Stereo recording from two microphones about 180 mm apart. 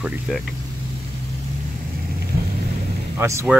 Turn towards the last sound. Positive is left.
turn(degrees=-15)  # may be behind; listen again after turning